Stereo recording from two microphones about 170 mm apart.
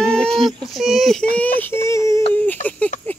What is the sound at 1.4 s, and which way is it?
Speech, 10° left (ahead or behind).